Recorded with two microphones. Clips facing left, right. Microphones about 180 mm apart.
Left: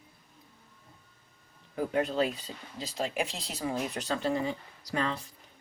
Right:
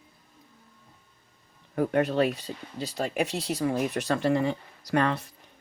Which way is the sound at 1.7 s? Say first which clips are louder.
Right 5 dB; 65° right (ahead or behind).